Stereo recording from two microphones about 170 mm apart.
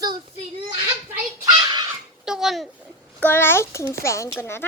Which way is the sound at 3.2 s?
10° left (ahead or behind).